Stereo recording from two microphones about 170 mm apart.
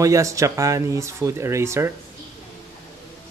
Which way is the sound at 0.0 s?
20° right (ahead or behind).